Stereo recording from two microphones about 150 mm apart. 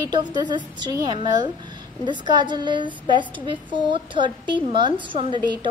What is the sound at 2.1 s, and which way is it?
A woman's voice, 30° right (ahead or behind).